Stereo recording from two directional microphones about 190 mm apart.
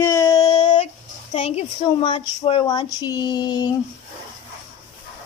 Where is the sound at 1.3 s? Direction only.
35° left (ahead or behind).